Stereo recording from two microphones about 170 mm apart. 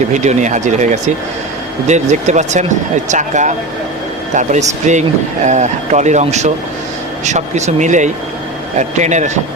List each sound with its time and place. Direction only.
0.1 s speech: 45° right (ahead or behind)